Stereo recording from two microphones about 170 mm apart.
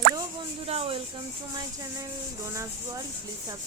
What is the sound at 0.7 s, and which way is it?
Speech, 35° right (ahead or behind).